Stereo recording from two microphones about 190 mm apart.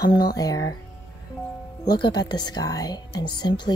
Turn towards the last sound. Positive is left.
turn(degrees=20)  # may be behind; listen again after turning